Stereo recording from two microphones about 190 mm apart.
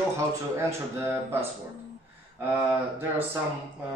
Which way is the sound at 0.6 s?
15° right (ahead or behind).